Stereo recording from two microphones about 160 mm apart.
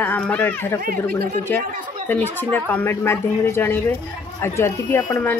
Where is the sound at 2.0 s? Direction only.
10° left (ahead or behind).